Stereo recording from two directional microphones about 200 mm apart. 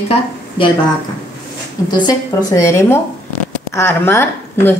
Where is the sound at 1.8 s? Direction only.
20° left (ahead or behind).